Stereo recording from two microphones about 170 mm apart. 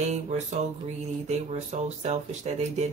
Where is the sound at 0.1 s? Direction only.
45° right (ahead or behind).